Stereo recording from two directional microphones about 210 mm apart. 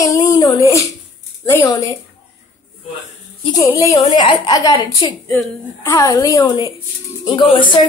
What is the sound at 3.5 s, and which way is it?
A woman's voice, 15° left (ahead or behind).